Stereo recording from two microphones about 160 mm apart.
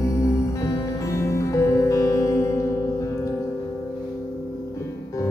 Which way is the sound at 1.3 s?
20° left (ahead or behind).